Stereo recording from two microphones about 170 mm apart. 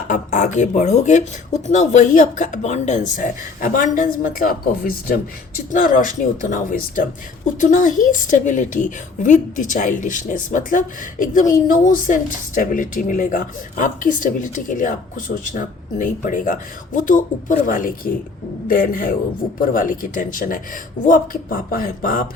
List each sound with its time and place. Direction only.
0.1 s a woman's voice: 45° left (ahead or behind)